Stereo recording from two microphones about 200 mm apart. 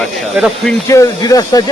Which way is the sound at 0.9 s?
15° left (ahead or behind).